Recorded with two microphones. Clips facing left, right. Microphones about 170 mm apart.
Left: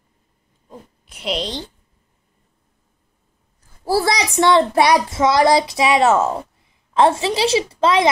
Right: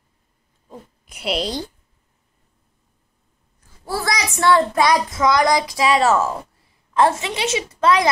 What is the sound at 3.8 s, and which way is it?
A child's voice, 30° left (ahead or behind).